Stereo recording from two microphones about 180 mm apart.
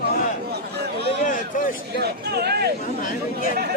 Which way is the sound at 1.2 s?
50° left (ahead or behind).